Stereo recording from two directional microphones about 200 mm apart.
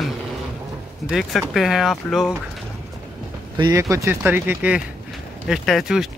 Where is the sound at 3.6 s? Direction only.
15° right (ahead or behind); by 6.1 s centre (ahead or behind).